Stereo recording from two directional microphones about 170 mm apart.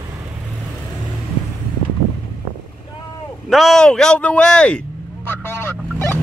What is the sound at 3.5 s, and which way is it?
Speech, centre (ahead or behind).